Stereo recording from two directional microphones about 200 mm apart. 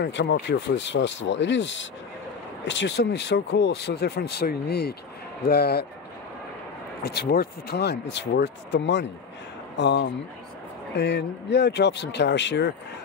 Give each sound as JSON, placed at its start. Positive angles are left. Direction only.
{"t": 0.0, "sound": "speech", "side_deg": 60}
{"t": 7.0, "sound": "speech", "side_deg": 50}